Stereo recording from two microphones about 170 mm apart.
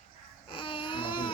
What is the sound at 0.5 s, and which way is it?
Baby cry, 30° left (ahead or behind).